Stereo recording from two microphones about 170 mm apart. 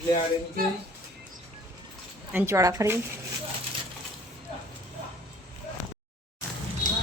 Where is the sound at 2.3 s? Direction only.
15° right (ahead or behind).